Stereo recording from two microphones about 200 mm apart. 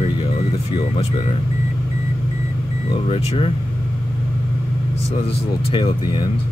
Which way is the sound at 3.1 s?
30° left (ahead or behind).